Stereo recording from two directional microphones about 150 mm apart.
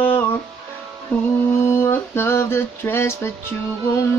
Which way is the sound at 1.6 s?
15° left (ahead or behind).